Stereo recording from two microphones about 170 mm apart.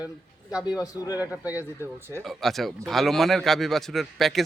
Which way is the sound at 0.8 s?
20° left (ahead or behind).